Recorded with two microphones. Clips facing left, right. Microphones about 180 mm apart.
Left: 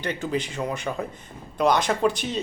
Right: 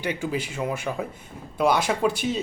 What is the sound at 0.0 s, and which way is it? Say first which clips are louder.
Speech: even; 10° right (ahead or behind).